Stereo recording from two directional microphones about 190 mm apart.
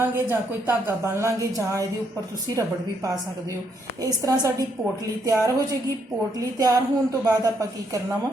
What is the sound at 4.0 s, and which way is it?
A woman's voice, 20° right (ahead or behind).